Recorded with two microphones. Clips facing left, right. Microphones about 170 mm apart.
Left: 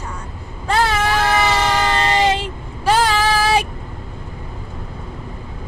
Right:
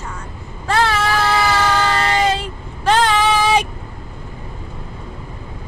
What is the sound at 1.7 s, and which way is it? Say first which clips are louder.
Speech: even; 20° left (ahead or behind).